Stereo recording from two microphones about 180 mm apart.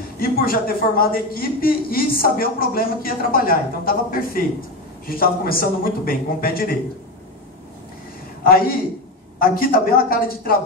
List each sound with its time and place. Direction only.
0.2 s speech: 55° left (ahead or behind)
9.4 s speech: 55° left (ahead or behind)